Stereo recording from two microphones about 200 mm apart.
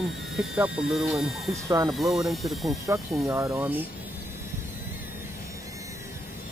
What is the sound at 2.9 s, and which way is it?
Speech, 15° right (ahead or behind).